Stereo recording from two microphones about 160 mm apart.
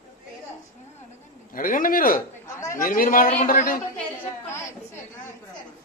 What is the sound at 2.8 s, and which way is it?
A man's voice, 60° left (ahead or behind).